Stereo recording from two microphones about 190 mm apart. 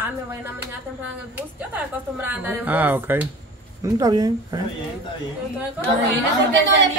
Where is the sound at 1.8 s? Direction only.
10° right (ahead or behind).